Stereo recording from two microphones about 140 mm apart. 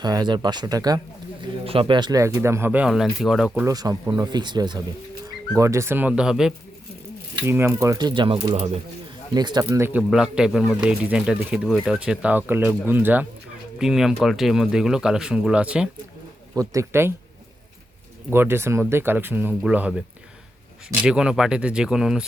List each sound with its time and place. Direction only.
0.0 s speech: 30° right (ahead or behind)
1.6 s speech: 40° right (ahead or behind)
2.2 s speech: 20° right (ahead or behind); by 3.5 s 5° right (ahead or behind)
3.7 s speech: 25° right (ahead or behind)
5.5 s speech: 20° right (ahead or behind); by 6.5 s 5° right (ahead or behind)
7.4 s speech: 15° right (ahead or behind); by 8.8 s 45° right (ahead or behind)
9.3 s speech: 30° right (ahead or behind)
9.6 s speech: 15° right (ahead or behind)
10.0 s speech: 5° right (ahead or behind)
13.7 s speech: 5° right (ahead or behind)
16.6 s speech: 20° right (ahead or behind)
18.3 s speech: 15° right (ahead or behind)